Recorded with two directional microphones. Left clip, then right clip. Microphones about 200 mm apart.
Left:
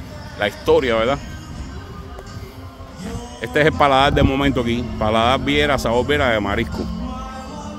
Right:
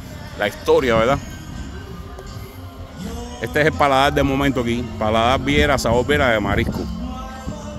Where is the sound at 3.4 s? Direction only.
10° left (ahead or behind); by 6.6 s 15° right (ahead or behind).